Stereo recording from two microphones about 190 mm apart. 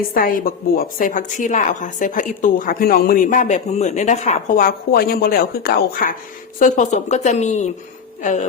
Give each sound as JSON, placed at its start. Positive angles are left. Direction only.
{"t": 0.1, "sound": "a woman's voice", "side_deg": 50}